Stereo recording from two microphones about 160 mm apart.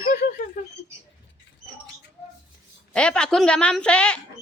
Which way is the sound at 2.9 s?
5° left (ahead or behind).